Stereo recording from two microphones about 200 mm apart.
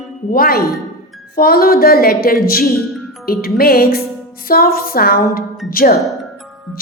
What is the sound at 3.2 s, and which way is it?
A woman's voice, 50° left (ahead or behind).